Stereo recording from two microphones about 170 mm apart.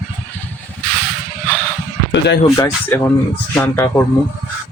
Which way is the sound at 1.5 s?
10° left (ahead or behind).